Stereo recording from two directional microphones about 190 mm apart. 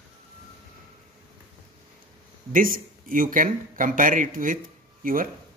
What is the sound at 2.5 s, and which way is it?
Speech, 45° right (ahead or behind).